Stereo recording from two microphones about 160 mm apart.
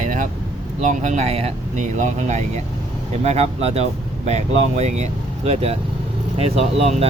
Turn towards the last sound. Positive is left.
turn(degrees=-40)  # may be behind; listen again after turning